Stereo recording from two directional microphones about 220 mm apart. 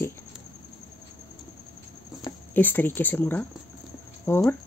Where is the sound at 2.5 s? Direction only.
10° left (ahead or behind).